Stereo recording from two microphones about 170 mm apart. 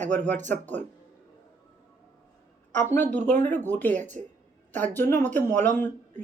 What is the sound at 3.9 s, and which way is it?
Speech, 45° right (ahead or behind).